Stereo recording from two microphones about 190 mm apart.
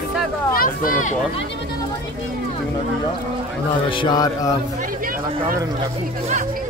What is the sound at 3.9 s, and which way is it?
Mantra, 25° left (ahead or behind).